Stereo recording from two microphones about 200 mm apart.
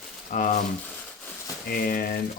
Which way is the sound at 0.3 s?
40° left (ahead or behind).